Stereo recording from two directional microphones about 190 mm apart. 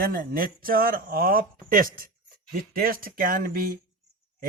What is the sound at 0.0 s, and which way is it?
Speech, 50° right (ahead or behind).